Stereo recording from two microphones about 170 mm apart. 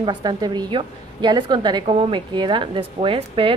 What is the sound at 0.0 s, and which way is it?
A woman's voice, 25° right (ahead or behind).